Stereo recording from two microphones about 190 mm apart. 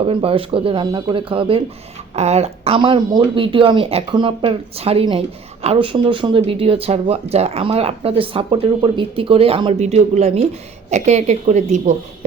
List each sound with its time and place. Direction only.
0.0 s a woman's voice: 30° right (ahead or behind)